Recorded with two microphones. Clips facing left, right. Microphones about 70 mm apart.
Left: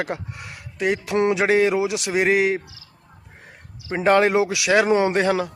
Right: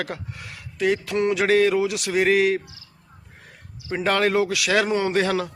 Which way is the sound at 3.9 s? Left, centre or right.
Centre.